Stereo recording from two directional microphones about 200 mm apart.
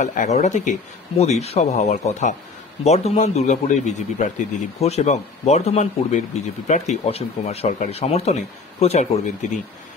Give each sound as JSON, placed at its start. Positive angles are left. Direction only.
{"t": 0.0, "sound": "speech", "side_deg": 40}